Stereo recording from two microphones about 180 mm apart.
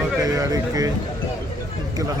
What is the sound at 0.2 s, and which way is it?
Speech, 20° right (ahead or behind).